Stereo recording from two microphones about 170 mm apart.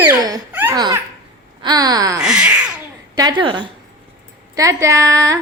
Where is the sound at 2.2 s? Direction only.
5° right (ahead or behind).